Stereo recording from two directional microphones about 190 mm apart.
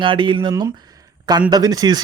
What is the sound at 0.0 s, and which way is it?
Speech, 25° right (ahead or behind).